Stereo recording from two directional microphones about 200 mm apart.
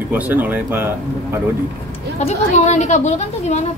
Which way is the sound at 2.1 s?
35° left (ahead or behind).